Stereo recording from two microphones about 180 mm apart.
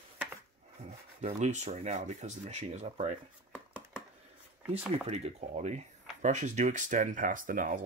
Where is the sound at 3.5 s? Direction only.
5° right (ahead or behind).